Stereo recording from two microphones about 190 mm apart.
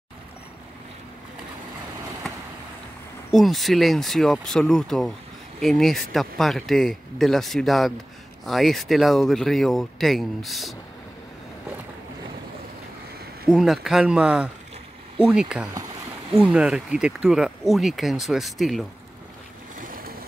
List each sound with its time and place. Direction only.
3.3 s speech: centre (ahead or behind)
13.5 s speech: 5° right (ahead or behind)
19.8 s vehicle: 50° right (ahead or behind)